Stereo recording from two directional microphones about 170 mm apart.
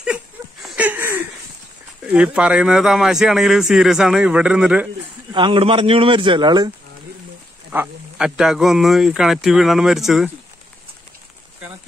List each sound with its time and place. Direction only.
0.0 s a sound: 5° right (ahead or behind)
2.0 s speech: 10° right (ahead or behind)
5.3 s speech: 30° right (ahead or behind)
7.7 s speech: 10° right (ahead or behind)